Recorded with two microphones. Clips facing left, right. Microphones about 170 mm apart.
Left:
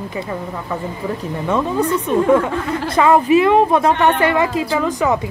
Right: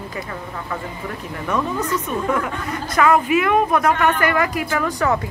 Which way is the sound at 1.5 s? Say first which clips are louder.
Left 4 dB; 25° left (ahead or behind).